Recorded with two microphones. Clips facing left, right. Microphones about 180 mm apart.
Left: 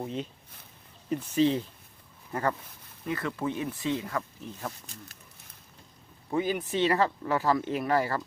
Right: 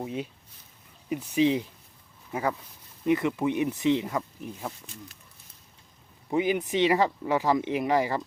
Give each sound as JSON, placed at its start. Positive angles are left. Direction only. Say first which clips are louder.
{"t": 0.0, "sound": "speech", "louder": "right 1 dB", "side_deg": -10}
{"t": 3.0, "sound": "speech", "louder": "right 7 dB", "side_deg": -20}
{"t": 6.3, "sound": "speech", "louder": "right 3 dB", "side_deg": -15}